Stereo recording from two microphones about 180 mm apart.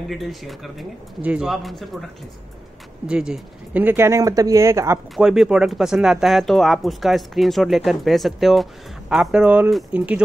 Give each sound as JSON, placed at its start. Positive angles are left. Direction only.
{"t": 0.1, "sound": "speech", "side_deg": 0}
{"t": 3.1, "sound": "speech", "side_deg": -5}
{"t": 5.1, "sound": "speech", "side_deg": 0}